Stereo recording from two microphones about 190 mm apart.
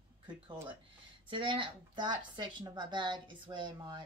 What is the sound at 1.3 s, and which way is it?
Speech, 25° right (ahead or behind).